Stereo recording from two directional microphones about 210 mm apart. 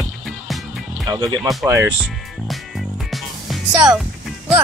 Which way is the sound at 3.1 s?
Centre (ahead or behind).